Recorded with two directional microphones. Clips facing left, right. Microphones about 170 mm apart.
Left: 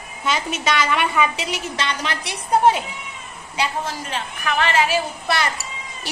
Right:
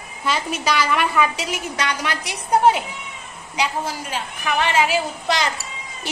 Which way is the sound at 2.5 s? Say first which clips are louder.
Even; 10° right (ahead or behind).